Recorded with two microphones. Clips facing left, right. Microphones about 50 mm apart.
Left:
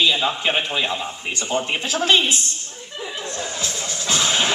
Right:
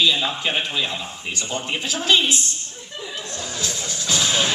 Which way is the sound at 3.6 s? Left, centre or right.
Left.